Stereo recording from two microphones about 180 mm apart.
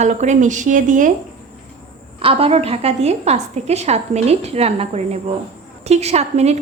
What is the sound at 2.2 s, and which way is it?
A woman's voice, 30° right (ahead or behind).